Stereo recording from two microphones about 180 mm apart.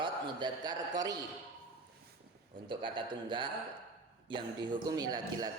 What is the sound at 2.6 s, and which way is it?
A man's voice, 25° right (ahead or behind).